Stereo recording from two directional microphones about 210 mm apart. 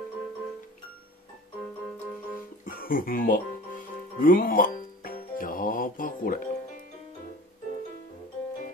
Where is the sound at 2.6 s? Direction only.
40° left (ahead or behind).